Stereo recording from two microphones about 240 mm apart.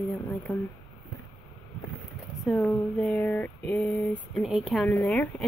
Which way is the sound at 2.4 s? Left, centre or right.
Centre.